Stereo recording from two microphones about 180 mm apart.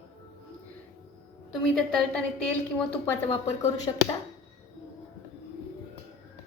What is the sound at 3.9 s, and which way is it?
Speech, 20° left (ahead or behind).